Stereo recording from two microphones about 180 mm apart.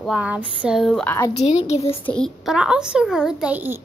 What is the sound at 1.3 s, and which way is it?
Speech, 35° left (ahead or behind).